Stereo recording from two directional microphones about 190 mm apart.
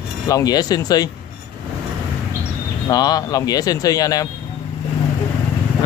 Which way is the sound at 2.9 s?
20° left (ahead or behind).